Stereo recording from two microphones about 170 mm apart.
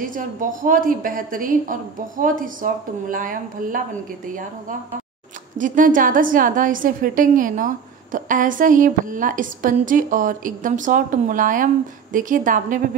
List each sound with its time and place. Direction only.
0.0 s a woman's voice: 50° right (ahead or behind)